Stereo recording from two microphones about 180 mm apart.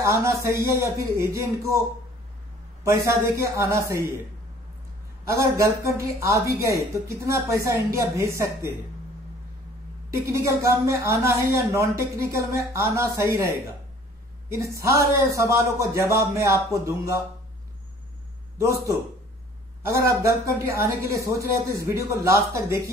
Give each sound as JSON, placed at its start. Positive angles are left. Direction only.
{"t": 0.0, "sound": "speech", "side_deg": -15}
{"t": 2.8, "sound": "speech", "side_deg": -15}
{"t": 5.2, "sound": "speech", "side_deg": -15}
{"t": 10.1, "sound": "speech", "side_deg": -15}
{"t": 19.8, "sound": "speech", "side_deg": -15}